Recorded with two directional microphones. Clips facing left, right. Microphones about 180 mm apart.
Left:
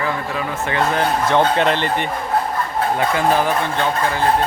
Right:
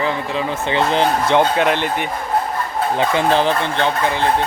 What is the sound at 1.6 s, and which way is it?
Speech, 10° right (ahead or behind).